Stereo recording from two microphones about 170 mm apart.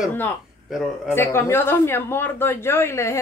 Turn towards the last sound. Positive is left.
turn(degrees=15)  # may be behind; listen again after turning